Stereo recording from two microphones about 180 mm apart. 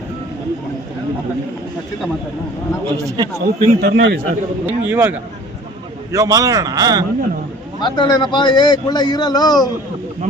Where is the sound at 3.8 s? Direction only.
65° right (ahead or behind).